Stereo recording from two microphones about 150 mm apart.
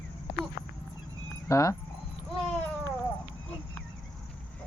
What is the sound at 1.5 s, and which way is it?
Speech, 20° left (ahead or behind).